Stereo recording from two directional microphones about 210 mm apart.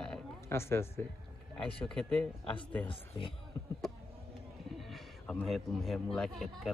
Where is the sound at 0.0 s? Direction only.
10° left (ahead or behind).